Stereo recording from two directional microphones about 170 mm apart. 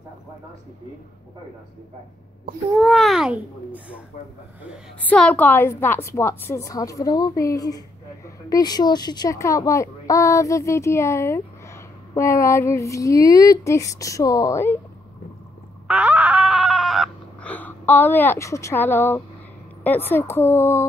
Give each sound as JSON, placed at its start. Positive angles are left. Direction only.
{"t": 2.7, "sound": "a child's voice", "side_deg": 0}
{"t": 5.0, "sound": "a woman's voice", "side_deg": 5}
{"t": 15.9, "sound": "a sound", "side_deg": -10}
{"t": 19.8, "sound": "a woman's voice", "side_deg": 10}